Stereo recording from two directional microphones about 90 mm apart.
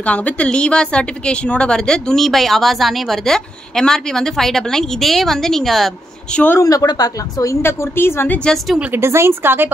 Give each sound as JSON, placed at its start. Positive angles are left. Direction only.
{"t": 0.0, "sound": "a woman's voice", "side_deg": 15}
{"t": 6.3, "sound": "a woman's voice", "side_deg": 20}
{"t": 6.6, "sound": "a woman's voice", "side_deg": 40}
{"t": 7.6, "sound": "a woman's voice", "side_deg": 25}
{"t": 8.9, "sound": "speech", "side_deg": -30}